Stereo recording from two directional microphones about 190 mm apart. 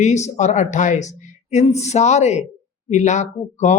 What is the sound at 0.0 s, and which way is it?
Speech, 40° left (ahead or behind).